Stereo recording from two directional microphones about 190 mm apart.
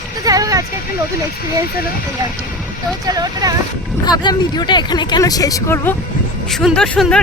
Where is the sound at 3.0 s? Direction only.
20° right (ahead or behind).